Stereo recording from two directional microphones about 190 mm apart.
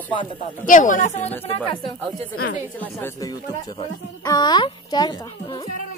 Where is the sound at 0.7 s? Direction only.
45° left (ahead or behind).